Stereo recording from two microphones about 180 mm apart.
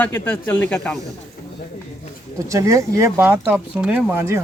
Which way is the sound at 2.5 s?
15° right (ahead or behind).